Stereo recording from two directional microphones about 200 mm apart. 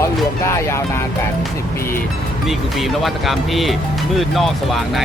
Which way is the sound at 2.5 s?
Centre (ahead or behind).